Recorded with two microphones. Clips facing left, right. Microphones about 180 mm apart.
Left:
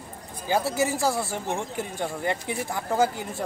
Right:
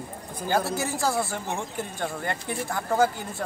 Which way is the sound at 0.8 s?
10° left (ahead or behind).